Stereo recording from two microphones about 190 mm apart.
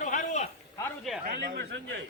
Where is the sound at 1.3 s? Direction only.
60° right (ahead or behind).